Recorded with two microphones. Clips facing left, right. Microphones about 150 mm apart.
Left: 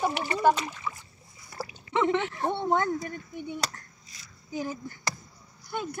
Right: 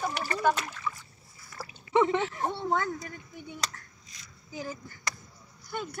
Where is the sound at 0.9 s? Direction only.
30° left (ahead or behind).